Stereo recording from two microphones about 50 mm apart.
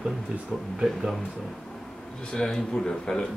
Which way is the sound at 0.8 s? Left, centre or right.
Centre.